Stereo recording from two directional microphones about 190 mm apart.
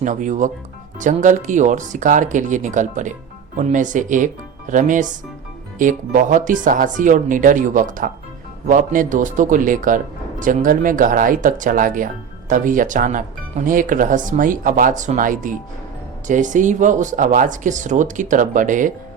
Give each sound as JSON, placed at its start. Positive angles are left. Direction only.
{"t": 0.0, "sound": "speech", "side_deg": -40}